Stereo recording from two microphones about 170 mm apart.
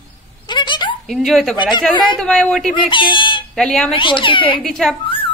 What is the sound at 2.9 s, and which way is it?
Speech, 30° left (ahead or behind).